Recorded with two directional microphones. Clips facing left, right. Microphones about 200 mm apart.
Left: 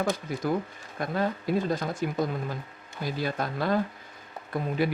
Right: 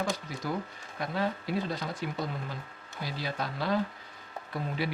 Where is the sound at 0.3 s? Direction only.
55° left (ahead or behind).